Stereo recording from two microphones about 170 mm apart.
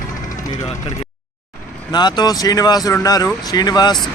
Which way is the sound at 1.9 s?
25° left (ahead or behind).